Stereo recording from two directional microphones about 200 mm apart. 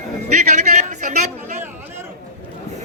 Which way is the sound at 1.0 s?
35° right (ahead or behind).